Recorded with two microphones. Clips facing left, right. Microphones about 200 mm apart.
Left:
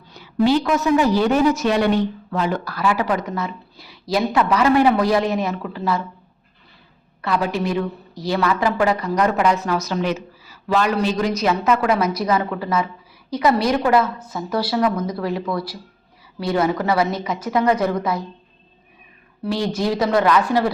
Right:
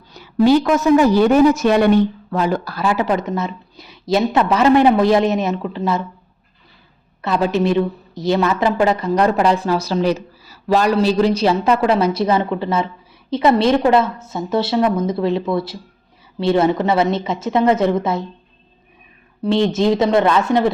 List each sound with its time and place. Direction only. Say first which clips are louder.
0.1 s a woman's voice: right 4 dB; 45° right (ahead or behind)
2.3 s speech: right 3 dB; 40° right (ahead or behind)
2.6 s a woman's voice: right 2 dB; 25° right (ahead or behind)
7.2 s a woman's voice: right 4 dB; 25° right (ahead or behind)
19.4 s a woman's voice: right 6 dB; 25° right (ahead or behind)